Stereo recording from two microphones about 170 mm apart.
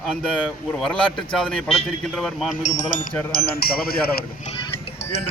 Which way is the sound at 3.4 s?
65° left (ahead or behind).